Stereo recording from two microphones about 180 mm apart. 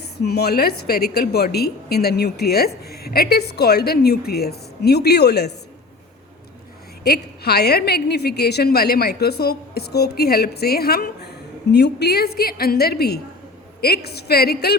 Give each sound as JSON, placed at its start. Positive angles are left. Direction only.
{"t": 0.2, "sound": "a woman's voice", "side_deg": 60}
{"t": 7.0, "sound": "a woman's voice", "side_deg": 65}